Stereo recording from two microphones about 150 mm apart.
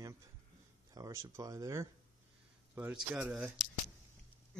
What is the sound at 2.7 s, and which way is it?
Speech, 10° right (ahead or behind).